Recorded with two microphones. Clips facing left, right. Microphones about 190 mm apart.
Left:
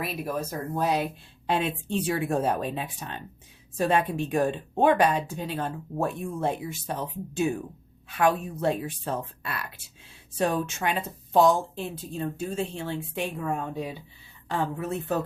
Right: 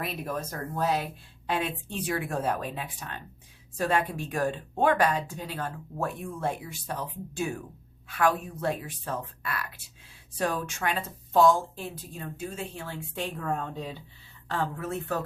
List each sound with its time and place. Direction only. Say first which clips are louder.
0.0 s speech: left 3 dB; 5° left (ahead or behind); by 15.2 s 20° left (ahead or behind)